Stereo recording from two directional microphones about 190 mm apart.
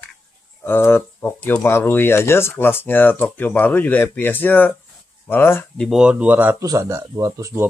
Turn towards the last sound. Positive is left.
turn(degrees=-15)  # may be behind; listen again after turning